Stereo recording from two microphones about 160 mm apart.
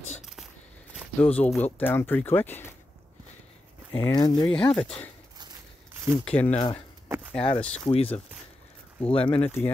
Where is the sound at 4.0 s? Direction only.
25° left (ahead or behind).